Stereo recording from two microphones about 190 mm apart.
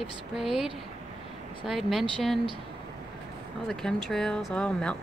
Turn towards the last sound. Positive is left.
turn(degrees=5)  # may be behind; listen again after turning